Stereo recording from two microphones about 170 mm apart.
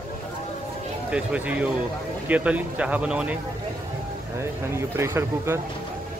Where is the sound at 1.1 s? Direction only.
5° right (ahead or behind).